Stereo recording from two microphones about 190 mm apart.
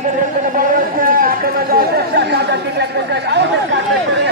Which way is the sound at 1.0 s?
50° right (ahead or behind).